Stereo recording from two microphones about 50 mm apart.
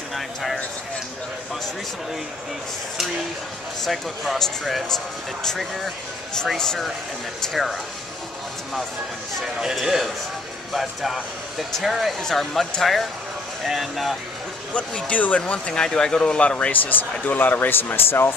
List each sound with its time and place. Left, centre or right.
0.1 s a sound: centre
3.8 s speech: centre
9.4 s a man's voice: centre
12.2 s speech: centre
13.7 s speech: centre
14.7 s speech: left
15.7 s speech: centre; by 18.3 s left